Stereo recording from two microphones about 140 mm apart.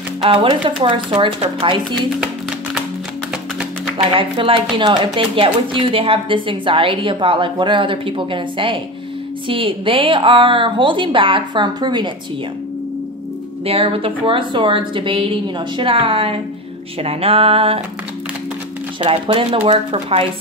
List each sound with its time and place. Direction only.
0.2 s speech: 40° right (ahead or behind)
4.1 s speech: 40° right (ahead or behind)
13.7 s speech: 45° right (ahead or behind)
17.0 s a sound: 45° right (ahead or behind)
18.9 s speech: 40° right (ahead or behind)